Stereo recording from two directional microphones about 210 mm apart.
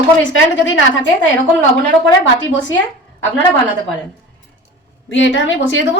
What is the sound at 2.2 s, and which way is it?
Speech, 60° left (ahead or behind).